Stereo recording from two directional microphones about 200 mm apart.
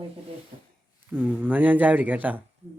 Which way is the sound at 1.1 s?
5° right (ahead or behind).